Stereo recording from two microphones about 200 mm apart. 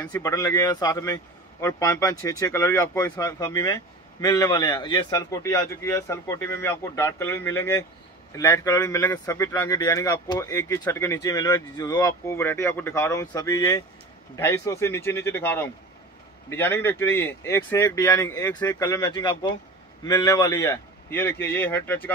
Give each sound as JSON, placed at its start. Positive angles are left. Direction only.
{"t": 0.0, "sound": "speech", "side_deg": 10}